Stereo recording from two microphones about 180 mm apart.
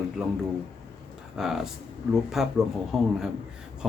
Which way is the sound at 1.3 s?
Centre (ahead or behind).